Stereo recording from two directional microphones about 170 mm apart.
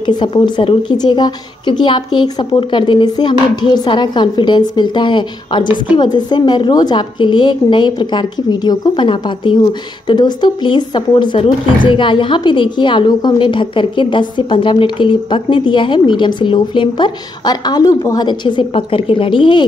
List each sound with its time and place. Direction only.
0.0 s a woman's voice: 30° left (ahead or behind)